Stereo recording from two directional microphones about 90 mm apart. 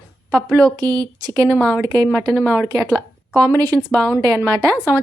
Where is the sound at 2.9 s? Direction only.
5° left (ahead or behind).